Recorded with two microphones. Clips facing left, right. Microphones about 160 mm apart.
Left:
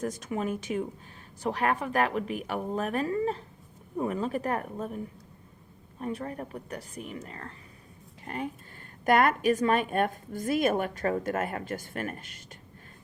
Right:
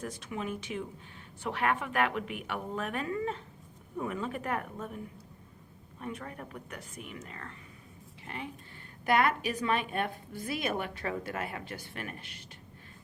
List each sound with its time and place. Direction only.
0.0 s a woman's voice: 45° left (ahead or behind)
6.0 s a woman's voice: 35° left (ahead or behind)